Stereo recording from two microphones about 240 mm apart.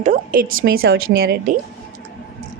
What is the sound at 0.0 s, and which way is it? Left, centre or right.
A woman's voice, right.